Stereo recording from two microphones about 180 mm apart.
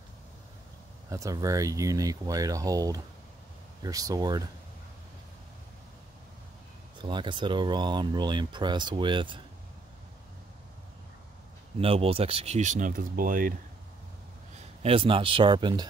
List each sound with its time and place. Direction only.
1.1 s speech: 20° right (ahead or behind)
7.0 s speech: 25° right (ahead or behind)
11.8 s speech: 30° right (ahead or behind); by 13.6 s 50° right (ahead or behind)
14.8 s speech: 30° right (ahead or behind)